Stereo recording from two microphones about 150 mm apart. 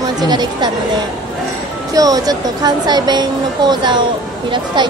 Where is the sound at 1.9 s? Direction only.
25° right (ahead or behind).